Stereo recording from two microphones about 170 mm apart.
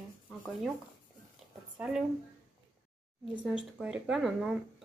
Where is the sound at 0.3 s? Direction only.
Centre (ahead or behind).